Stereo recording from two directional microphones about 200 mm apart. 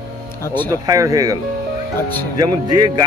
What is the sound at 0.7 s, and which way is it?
Speech, 15° right (ahead or behind).